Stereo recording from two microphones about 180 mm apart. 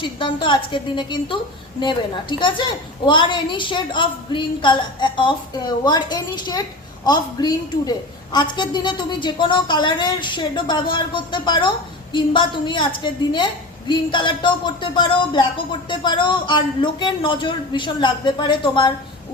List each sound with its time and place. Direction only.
0.0 s a woman's voice: 25° left (ahead or behind)
2.4 s a woman's voice: 25° left (ahead or behind)